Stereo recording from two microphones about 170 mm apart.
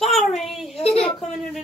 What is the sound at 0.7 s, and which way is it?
Speech, 35° left (ahead or behind).